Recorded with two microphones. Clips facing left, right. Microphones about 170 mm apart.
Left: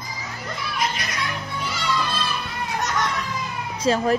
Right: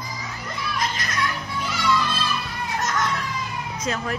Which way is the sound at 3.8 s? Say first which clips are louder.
Left 8 dB; 30° left (ahead or behind).